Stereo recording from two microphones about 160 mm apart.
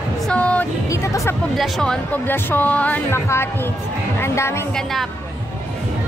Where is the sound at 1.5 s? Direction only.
Centre (ahead or behind); by 4.7 s 15° left (ahead or behind).